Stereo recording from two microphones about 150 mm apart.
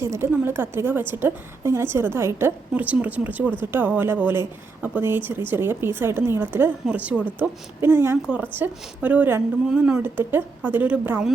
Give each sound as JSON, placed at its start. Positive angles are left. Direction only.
{"t": 0.0, "sound": "a woman's voice", "side_deg": -15}